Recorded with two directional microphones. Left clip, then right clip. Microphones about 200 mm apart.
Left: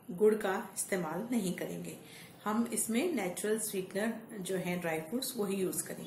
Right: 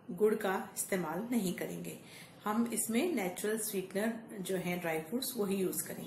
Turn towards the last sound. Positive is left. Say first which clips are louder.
# even
turn(degrees=0)  # may be behind; listen again after turning